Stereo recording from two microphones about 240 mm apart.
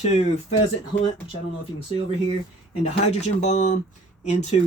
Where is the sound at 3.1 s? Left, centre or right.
Left.